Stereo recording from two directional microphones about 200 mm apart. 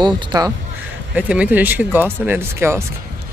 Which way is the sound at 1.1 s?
5° right (ahead or behind).